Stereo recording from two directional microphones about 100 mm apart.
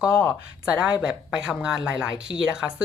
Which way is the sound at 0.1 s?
25° left (ahead or behind).